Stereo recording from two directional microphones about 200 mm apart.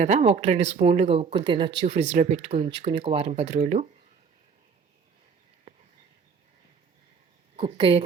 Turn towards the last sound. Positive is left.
turn(degrees=-30)  # may be behind; listen again after turning